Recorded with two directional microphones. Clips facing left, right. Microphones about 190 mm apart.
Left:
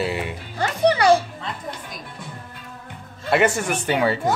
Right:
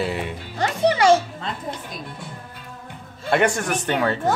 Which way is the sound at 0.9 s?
20° right (ahead or behind).